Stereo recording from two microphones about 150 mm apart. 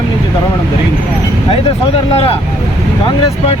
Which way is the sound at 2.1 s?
40° left (ahead or behind).